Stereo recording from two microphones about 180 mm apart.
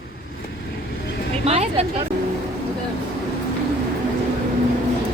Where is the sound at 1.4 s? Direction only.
35° right (ahead or behind).